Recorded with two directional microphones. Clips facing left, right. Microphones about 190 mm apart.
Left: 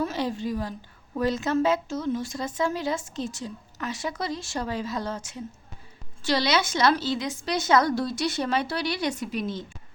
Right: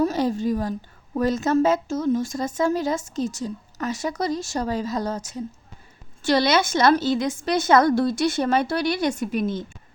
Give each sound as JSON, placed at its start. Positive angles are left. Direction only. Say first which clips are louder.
{"t": 0.0, "sound": "a woman's voice", "louder": "right 6 dB", "side_deg": -40}